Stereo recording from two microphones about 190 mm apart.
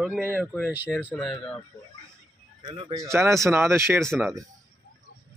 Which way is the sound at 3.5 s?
15° right (ahead or behind).